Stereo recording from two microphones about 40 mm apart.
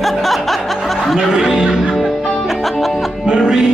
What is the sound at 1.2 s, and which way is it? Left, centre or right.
Music, centre.